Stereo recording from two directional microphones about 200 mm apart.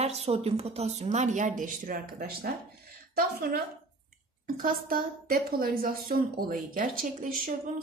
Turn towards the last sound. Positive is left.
turn(degrees=-45)  # may be behind; listen again after turning